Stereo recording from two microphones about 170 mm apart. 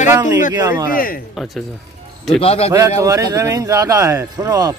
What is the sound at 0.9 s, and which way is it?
Speech, 60° left (ahead or behind).